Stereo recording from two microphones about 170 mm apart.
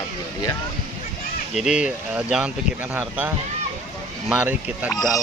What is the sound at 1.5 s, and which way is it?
Speech, 5° right (ahead or behind).